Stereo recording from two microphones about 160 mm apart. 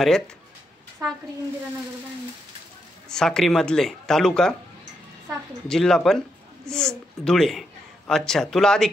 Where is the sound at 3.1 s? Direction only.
5° left (ahead or behind).